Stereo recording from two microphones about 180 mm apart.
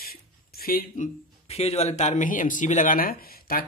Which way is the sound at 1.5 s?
35° left (ahead or behind).